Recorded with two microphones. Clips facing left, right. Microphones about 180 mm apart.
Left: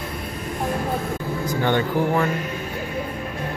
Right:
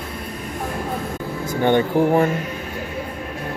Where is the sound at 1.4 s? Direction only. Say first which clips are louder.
Right 4 dB; 20° right (ahead or behind).